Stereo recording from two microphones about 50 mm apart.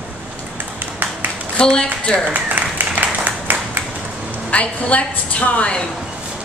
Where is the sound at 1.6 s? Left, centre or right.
Centre.